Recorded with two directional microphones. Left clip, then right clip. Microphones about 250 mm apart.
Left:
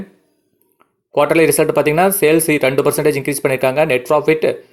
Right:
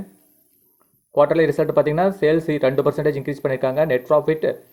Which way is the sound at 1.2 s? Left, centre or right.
Left.